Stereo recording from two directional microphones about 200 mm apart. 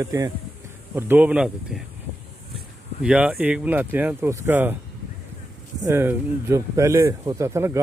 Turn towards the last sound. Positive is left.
turn(degrees=-15)  # may be behind; listen again after turning